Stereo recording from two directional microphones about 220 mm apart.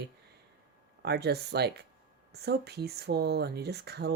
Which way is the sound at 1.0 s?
50° right (ahead or behind).